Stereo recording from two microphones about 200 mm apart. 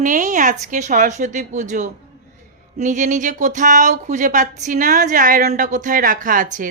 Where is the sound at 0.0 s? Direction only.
40° right (ahead or behind).